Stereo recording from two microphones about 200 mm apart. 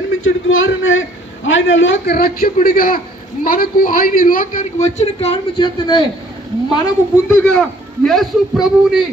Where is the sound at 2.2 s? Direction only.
45° left (ahead or behind); by 6.0 s 25° left (ahead or behind).